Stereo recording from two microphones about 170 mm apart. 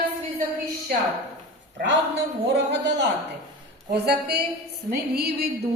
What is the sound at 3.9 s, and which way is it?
A woman's voice, 70° right (ahead or behind).